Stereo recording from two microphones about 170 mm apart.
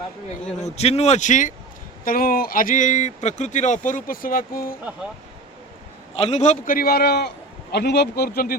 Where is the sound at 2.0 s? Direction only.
60° left (ahead or behind).